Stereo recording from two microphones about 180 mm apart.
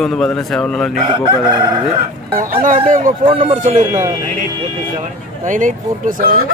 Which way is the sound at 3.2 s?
30° right (ahead or behind).